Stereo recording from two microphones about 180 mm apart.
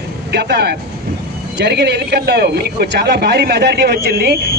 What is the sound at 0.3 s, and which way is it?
A man's voice, 65° right (ahead or behind).